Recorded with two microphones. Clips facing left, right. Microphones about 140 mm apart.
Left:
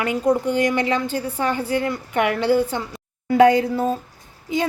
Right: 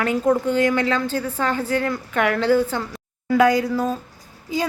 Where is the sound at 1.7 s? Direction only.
45° right (ahead or behind).